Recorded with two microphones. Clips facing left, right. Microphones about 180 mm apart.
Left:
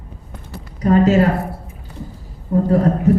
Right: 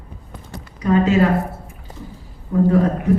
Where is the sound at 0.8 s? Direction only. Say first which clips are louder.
Left 2 dB; 40° left (ahead or behind).